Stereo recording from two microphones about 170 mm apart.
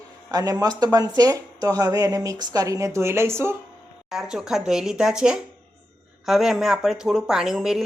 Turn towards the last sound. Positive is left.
turn(degrees=-5)  # may be behind; listen again after turning